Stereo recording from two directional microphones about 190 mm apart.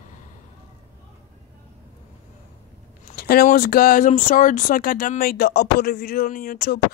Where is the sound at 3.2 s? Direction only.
50° left (ahead or behind).